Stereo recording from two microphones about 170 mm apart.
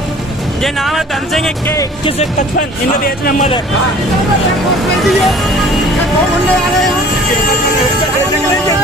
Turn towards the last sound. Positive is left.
turn(degrees=0)  # may be behind; listen again after turning